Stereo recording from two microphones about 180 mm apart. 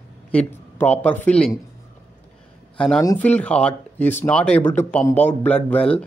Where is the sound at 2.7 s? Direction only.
5° left (ahead or behind).